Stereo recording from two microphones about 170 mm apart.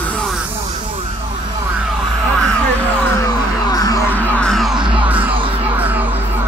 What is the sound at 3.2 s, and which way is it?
Music, 20° left (ahead or behind).